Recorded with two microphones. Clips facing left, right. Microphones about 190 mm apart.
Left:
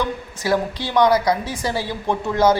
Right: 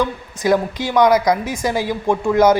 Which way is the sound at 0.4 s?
15° right (ahead or behind).